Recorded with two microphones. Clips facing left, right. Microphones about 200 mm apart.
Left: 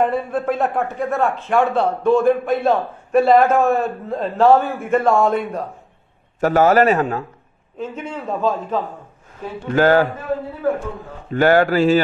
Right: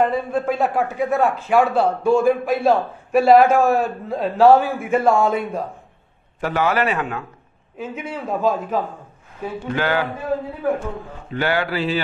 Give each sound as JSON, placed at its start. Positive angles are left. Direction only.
{"t": 0.0, "sound": "a man's voice", "side_deg": 0}
{"t": 6.4, "sound": "a man's voice", "side_deg": 40}
{"t": 7.7, "sound": "a man's voice", "side_deg": -5}
{"t": 9.8, "sound": "a man's voice", "side_deg": 45}
{"t": 11.3, "sound": "a man's voice", "side_deg": 45}